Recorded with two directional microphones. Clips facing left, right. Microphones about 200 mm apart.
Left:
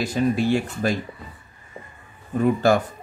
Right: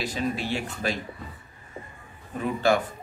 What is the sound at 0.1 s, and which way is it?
Speech, 45° left (ahead or behind).